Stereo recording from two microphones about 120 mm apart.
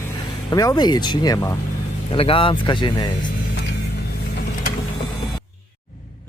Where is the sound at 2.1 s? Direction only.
50° left (ahead or behind).